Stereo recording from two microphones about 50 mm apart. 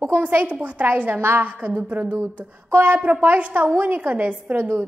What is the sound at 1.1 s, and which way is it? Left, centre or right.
Speech, right.